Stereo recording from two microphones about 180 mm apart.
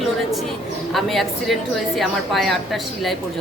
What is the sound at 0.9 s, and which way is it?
Speech, centre (ahead or behind).